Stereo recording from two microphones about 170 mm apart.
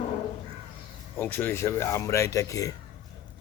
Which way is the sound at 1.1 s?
10° left (ahead or behind).